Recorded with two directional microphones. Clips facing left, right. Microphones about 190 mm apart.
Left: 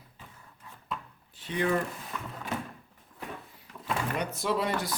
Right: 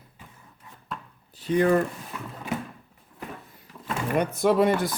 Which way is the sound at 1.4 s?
40° right (ahead or behind).